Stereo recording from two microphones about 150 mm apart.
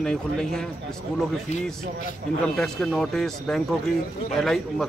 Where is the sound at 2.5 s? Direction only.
Centre (ahead or behind).